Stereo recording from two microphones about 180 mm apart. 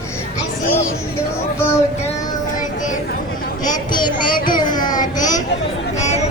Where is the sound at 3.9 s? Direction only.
25° left (ahead or behind).